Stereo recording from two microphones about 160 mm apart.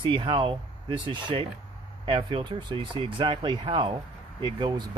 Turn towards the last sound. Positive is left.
turn(degrees=-30)  # may be behind; listen again after turning